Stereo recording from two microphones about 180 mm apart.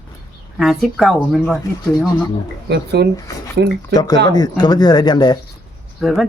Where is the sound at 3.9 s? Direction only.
20° left (ahead or behind).